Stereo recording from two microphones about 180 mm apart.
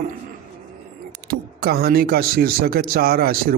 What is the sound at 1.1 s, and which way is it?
Speech, 60° right (ahead or behind).